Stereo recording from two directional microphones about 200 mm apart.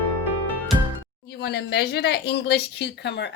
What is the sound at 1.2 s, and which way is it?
Speech, 55° left (ahead or behind).